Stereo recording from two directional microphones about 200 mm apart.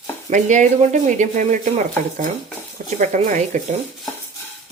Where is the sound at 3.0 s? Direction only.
40° right (ahead or behind).